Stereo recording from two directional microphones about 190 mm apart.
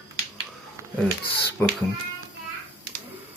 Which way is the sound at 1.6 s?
5° left (ahead or behind).